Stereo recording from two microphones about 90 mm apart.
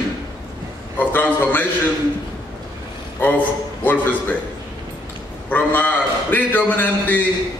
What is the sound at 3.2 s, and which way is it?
A man's voice, 20° left (ahead or behind).